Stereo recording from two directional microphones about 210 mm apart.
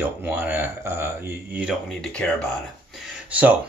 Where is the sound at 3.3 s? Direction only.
5° right (ahead or behind).